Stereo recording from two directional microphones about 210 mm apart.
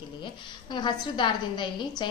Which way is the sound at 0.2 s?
20° left (ahead or behind).